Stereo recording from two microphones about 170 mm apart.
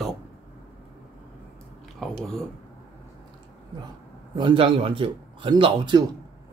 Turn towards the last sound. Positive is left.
turn(degrees=-25)  # may be behind; listen again after turning